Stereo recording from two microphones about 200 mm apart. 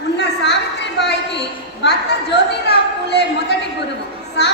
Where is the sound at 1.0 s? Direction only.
60° left (ahead or behind).